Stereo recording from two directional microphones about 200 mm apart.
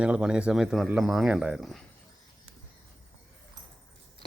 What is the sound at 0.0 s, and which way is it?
Speech, 5° right (ahead or behind).